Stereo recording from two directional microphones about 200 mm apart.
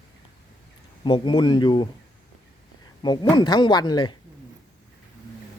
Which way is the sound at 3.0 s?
20° left (ahead or behind).